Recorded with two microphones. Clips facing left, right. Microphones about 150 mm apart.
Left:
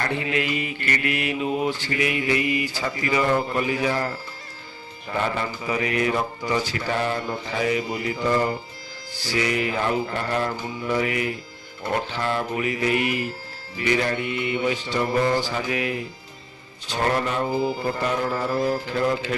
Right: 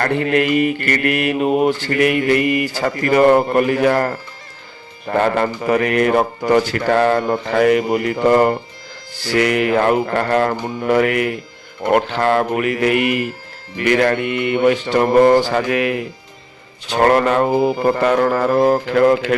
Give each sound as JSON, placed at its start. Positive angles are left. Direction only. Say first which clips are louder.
{"t": 0.0, "sound": "mantra", "louder": "right 9 dB", "side_deg": -55}
{"t": 9.1, "sound": "speech", "louder": "right 8 dB", "side_deg": -60}
{"t": 11.8, "sound": "mantra", "louder": "right 10 dB", "side_deg": -65}
{"t": 13.7, "sound": "speech", "louder": "right 8 dB", "side_deg": -65}